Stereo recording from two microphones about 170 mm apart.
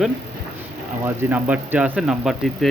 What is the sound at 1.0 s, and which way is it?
Speech, 10° right (ahead or behind).